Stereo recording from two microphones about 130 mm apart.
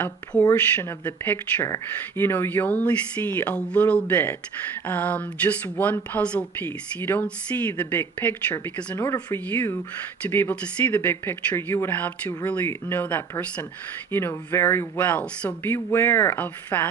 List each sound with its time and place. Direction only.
0.5 s speech: 15° left (ahead or behind)
10.8 s speech: 20° left (ahead or behind)